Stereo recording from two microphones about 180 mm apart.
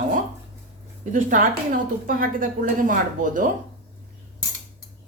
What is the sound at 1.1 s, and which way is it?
A woman's voice, 50° right (ahead or behind).